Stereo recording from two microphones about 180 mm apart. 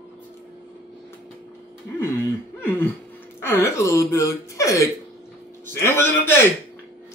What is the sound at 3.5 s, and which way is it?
A man's voice, 15° left (ahead or behind).